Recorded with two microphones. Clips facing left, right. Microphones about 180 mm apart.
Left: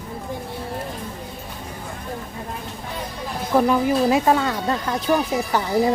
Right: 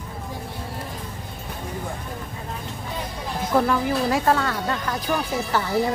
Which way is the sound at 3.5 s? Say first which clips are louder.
Left 3 dB; 15° left (ahead or behind).